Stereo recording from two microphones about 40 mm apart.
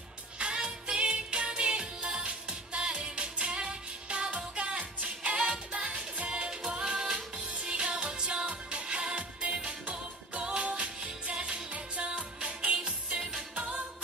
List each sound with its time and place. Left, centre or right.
0.4 s music: right